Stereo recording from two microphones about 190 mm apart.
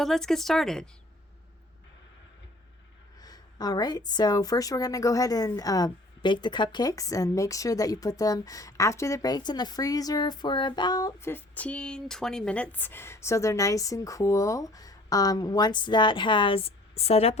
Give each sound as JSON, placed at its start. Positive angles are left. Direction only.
{"t": 0.0, "sound": "speech", "side_deg": 0}
{"t": 3.2, "sound": "a woman's voice", "side_deg": 20}